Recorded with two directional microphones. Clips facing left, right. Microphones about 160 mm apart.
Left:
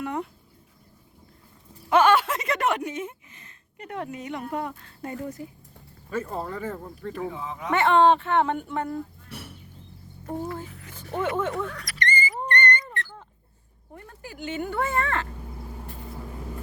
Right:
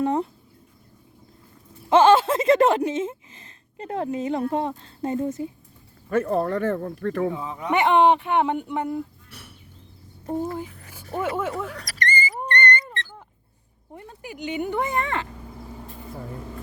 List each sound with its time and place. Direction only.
0.0 s speech: 30° right (ahead or behind)
1.9 s speech: 25° right (ahead or behind)
6.1 s speech: 65° right (ahead or behind)
7.7 s speech: 15° right (ahead or behind)
10.8 s speech: 10° right (ahead or behind)
11.7 s dog: 35° right (ahead or behind)
12.5 s cat: 30° right (ahead or behind)
13.9 s speech: 20° right (ahead or behind)